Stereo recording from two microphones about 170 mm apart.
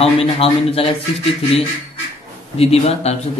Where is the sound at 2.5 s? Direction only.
35° left (ahead or behind).